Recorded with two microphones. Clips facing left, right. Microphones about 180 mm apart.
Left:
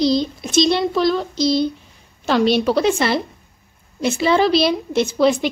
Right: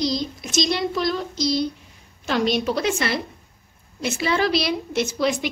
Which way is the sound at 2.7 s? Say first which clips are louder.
Left 6 dB; 30° left (ahead or behind).